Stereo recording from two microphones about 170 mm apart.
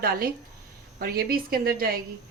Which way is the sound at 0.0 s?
60° right (ahead or behind).